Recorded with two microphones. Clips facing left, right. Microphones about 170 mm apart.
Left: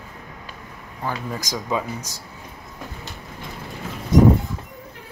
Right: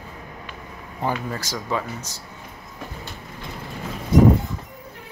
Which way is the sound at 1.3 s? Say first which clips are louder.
Left 1 dB; 15° left (ahead or behind).